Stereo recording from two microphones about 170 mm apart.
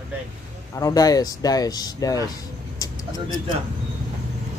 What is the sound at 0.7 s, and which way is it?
Speech, 20° left (ahead or behind).